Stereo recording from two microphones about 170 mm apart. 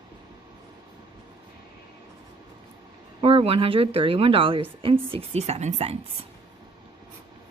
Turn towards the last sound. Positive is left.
turn(degrees=-40)  # may be behind; listen again after turning